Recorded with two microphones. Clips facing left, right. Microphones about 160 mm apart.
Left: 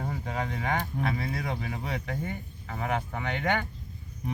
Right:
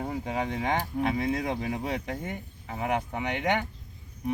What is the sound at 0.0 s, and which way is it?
Speech, 15° right (ahead or behind).